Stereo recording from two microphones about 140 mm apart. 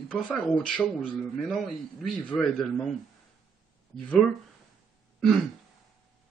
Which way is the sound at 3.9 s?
5° left (ahead or behind).